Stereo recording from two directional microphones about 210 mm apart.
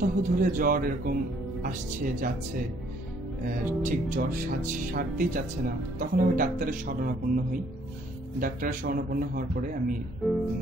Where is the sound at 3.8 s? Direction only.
40° right (ahead or behind).